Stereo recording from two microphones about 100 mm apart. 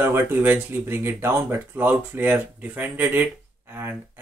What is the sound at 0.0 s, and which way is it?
Speech, 20° right (ahead or behind).